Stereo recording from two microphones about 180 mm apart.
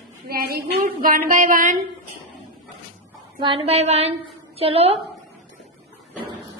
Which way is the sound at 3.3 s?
30° right (ahead or behind).